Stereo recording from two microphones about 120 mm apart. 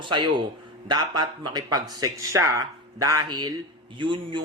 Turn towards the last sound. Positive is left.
turn(degrees=-45)  # may be behind; listen again after turning